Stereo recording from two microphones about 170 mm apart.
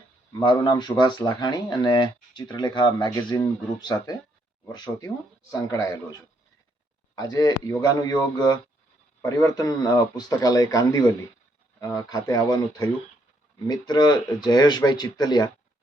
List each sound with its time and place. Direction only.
0.6 s speech: 25° left (ahead or behind)